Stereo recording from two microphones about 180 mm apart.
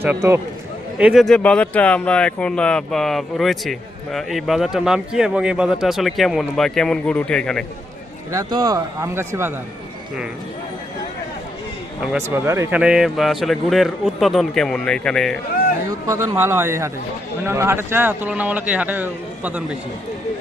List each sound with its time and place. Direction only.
0.0 s speech: 15° right (ahead or behind); by 7.6 s 5° left (ahead or behind)
8.3 s speech: 20° right (ahead or behind)
12.3 s speech: 15° right (ahead or behind); by 15.4 s 5° left (ahead or behind)
15.9 s speech: 15° right (ahead or behind)